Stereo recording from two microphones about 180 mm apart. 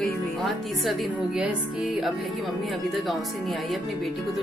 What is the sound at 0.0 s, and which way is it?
Speech, centre (ahead or behind).